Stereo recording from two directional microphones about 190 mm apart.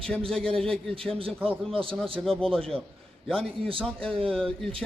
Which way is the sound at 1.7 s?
30° right (ahead or behind).